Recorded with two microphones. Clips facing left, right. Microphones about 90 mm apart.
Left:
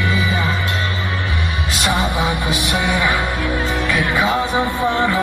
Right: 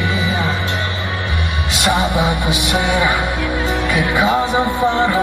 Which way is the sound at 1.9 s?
20° right (ahead or behind).